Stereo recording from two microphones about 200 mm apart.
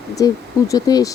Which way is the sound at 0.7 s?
20° left (ahead or behind).